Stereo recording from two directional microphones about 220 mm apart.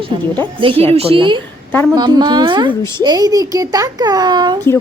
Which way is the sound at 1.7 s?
10° left (ahead or behind).